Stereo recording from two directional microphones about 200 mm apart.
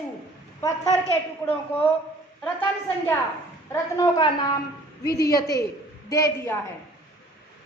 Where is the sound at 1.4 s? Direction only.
15° left (ahead or behind).